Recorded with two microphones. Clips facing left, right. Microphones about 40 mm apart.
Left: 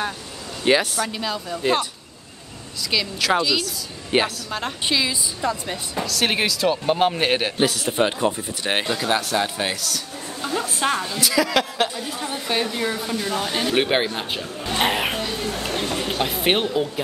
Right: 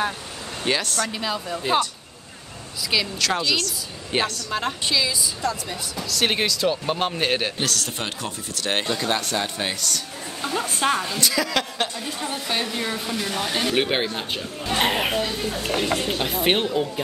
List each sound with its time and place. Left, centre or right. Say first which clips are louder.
0.7 s a man's voice: left 5 dB; centre
1.1 s speech: even; centre
3.2 s a man's voice: left 3 dB; centre
4.5 s speech: right 2 dB; centre
4.8 s a woman's voice: left 1 dB; centre
6.0 s a man's voice: even; centre
15.7 s speech: right 5 dB; right
16.1 s speech: left 1 dB; centre